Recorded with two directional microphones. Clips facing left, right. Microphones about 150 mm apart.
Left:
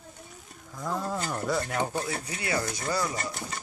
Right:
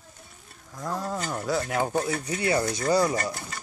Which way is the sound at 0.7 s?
Centre (ahead or behind).